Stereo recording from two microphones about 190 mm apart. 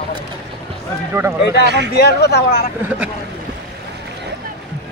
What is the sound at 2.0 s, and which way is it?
Speech, 60° left (ahead or behind).